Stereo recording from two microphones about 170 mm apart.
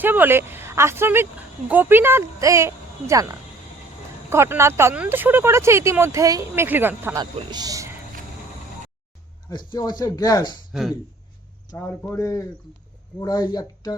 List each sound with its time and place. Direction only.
0.0 s speech: 10° right (ahead or behind)
7.2 s a man's voice: 25° right (ahead or behind)
9.5 s speech: 25° left (ahead or behind)
10.7 s speech: centre (ahead or behind)
11.7 s a man's voice: 15° left (ahead or behind)